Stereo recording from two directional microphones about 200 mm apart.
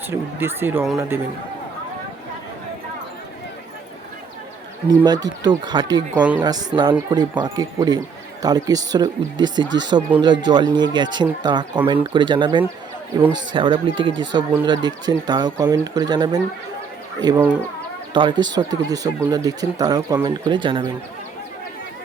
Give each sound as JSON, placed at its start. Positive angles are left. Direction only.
{"t": 0.1, "sound": "speech", "side_deg": -10}
{"t": 5.0, "sound": "speech", "side_deg": -20}
{"t": 6.1, "sound": "speech", "side_deg": -5}
{"t": 6.4, "sound": "speech", "side_deg": -20}